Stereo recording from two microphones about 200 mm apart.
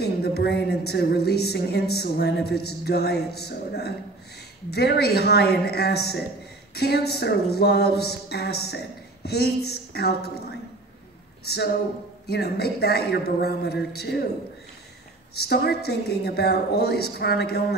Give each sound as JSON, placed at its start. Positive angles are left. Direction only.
{"t": 0.0, "sound": "a woman's voice", "side_deg": 55}
{"t": 11.4, "sound": "a woman's voice", "side_deg": 55}
{"t": 15.3, "sound": "a woman's voice", "side_deg": 50}